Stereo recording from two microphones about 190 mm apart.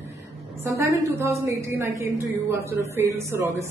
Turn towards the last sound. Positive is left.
turn(degrees=-15)  # may be behind; listen again after turning